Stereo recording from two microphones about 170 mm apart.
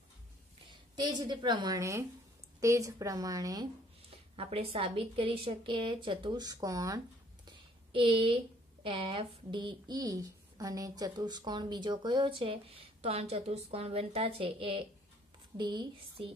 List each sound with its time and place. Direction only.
0.7 s a woman's voice: 25° right (ahead or behind)
4.4 s a woman's voice: 35° right (ahead or behind)
7.4 s a sound: 30° right (ahead or behind)
8.8 s speech: 30° right (ahead or behind)